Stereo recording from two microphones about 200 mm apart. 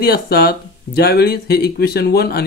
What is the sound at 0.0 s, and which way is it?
Speech, 50° left (ahead or behind).